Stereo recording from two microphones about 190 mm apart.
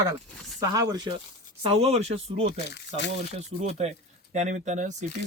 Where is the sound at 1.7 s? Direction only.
30° right (ahead or behind).